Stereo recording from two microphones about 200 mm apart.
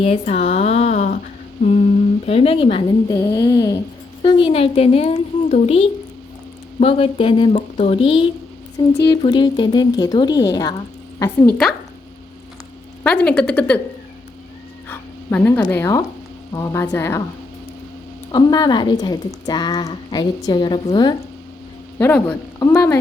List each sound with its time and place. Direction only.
0.0 s speech: 35° left (ahead or behind)
2.2 s a woman's voice: 30° left (ahead or behind)
11.2 s speech: 5° left (ahead or behind)
13.0 s speech: 5° left (ahead or behind)
14.8 s a sound: 10° left (ahead or behind)
15.7 s speech: 15° left (ahead or behind)
18.3 s a woman's voice: 20° left (ahead or behind)
21.9 s speech: 10° left (ahead or behind)